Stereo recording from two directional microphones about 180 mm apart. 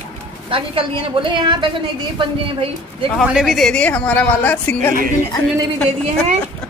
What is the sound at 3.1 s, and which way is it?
Speech, centre (ahead or behind).